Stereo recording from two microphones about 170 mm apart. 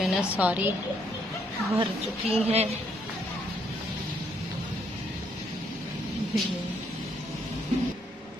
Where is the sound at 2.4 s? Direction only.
35° right (ahead or behind).